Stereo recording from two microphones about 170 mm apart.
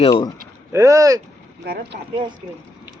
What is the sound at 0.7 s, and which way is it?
Speech, 15° right (ahead or behind).